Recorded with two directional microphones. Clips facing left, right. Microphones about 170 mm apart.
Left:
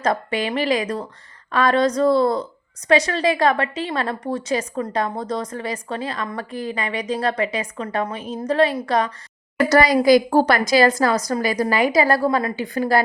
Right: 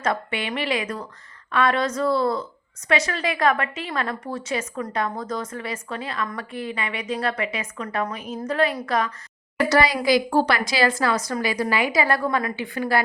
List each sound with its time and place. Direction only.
0.0 s a woman's voice: 40° left (ahead or behind)